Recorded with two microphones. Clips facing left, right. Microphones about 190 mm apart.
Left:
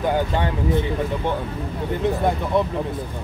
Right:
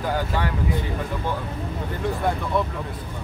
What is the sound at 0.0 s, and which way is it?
Speech, 20° left (ahead or behind).